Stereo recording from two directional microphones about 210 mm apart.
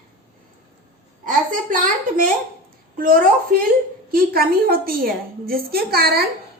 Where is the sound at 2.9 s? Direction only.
40° right (ahead or behind).